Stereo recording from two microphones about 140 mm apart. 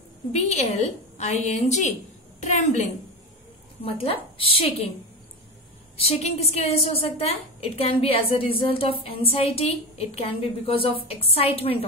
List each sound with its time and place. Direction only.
0.3 s a woman's voice: 55° left (ahead or behind)
3.8 s a woman's voice: 40° left (ahead or behind)
5.9 s a woman's voice: 50° left (ahead or behind)